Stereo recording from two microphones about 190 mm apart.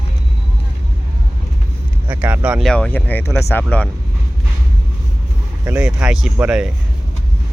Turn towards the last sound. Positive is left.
turn(degrees=-5)  # may be behind; listen again after turning